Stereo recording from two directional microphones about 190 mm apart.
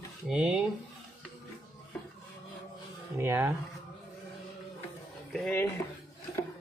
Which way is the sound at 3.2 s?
10° right (ahead or behind).